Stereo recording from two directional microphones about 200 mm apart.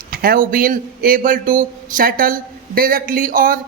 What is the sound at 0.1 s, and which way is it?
Speech, 50° right (ahead or behind).